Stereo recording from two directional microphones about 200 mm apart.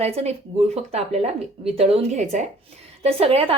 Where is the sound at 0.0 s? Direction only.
30° right (ahead or behind).